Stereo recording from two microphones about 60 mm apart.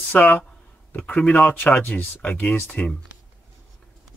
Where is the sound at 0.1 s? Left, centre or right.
Left.